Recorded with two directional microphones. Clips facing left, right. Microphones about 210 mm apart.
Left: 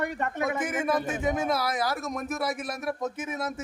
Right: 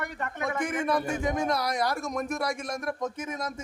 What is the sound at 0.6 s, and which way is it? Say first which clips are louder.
A man's voice: right 3 dB; 5° left (ahead or behind).